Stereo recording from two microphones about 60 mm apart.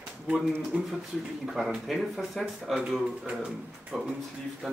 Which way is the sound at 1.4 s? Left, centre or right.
Centre.